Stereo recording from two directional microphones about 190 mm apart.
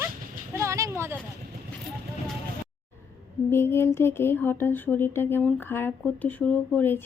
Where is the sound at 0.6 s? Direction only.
15° right (ahead or behind).